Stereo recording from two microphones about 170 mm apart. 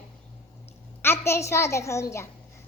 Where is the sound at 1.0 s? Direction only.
15° left (ahead or behind).